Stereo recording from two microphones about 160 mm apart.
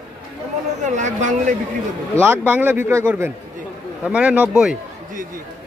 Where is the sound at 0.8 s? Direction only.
50° right (ahead or behind).